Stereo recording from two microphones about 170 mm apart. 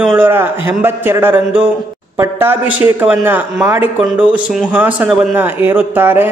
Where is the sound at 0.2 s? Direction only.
15° right (ahead or behind).